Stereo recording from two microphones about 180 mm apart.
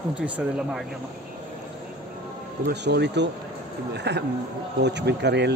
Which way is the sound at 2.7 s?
70° right (ahead or behind).